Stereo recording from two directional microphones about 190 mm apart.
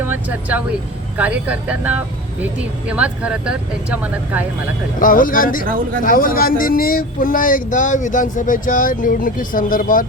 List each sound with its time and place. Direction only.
0.1 s speech: 10° right (ahead or behind)
4.9 s speech: 45° left (ahead or behind)
5.6 s speech: 45° right (ahead or behind)
6.1 s speech: 50° left (ahead or behind)